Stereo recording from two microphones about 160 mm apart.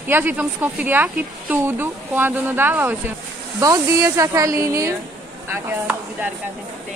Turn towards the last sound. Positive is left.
turn(degrees=-10)  # may be behind; listen again after turning